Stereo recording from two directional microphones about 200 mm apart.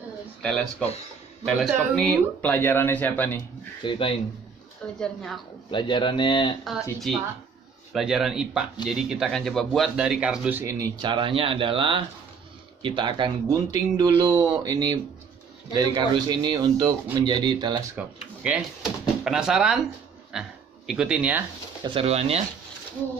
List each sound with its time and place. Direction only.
0.4 s speech: 5° left (ahead or behind)
3.8 s speech: 25° left (ahead or behind)
4.9 s speech: centre (ahead or behind)
5.7 s speech: 25° left (ahead or behind)
6.6 s speech: centre (ahead or behind); by 17.8 s 20° right (ahead or behind)
17.9 s speech: 5° right (ahead or behind)
21.8 s speech: 30° right (ahead or behind)